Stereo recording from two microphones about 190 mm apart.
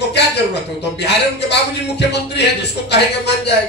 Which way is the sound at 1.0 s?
65° left (ahead or behind).